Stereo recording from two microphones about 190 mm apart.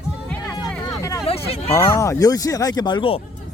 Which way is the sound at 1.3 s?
30° left (ahead or behind).